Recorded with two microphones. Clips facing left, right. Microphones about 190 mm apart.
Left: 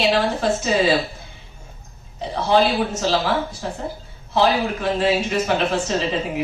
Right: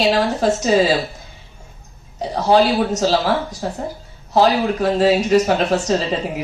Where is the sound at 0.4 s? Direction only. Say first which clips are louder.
Right 6 dB; 40° right (ahead or behind).